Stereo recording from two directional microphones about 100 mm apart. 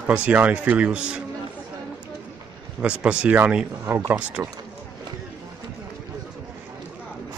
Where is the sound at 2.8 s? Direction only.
10° right (ahead or behind).